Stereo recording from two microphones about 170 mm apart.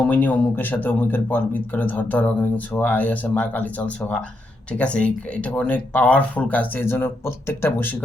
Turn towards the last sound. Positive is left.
turn(degrees=15)  # may be behind; listen again after turning